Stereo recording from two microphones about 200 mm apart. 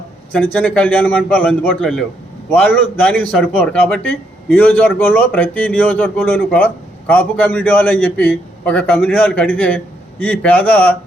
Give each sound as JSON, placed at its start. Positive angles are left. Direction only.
{"t": 0.3, "sound": "a man's voice", "side_deg": 5}